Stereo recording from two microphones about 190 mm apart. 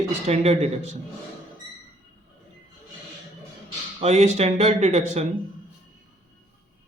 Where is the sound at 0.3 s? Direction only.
35° right (ahead or behind).